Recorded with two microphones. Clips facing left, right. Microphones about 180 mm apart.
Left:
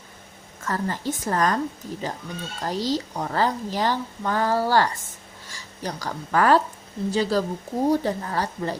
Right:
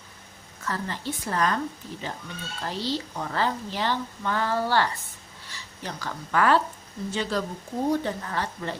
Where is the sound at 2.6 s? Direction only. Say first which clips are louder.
Left 4 dB; 40° left (ahead or behind).